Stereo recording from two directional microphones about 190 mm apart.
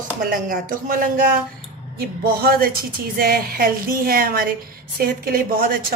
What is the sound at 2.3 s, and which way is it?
Speech, 50° right (ahead or behind).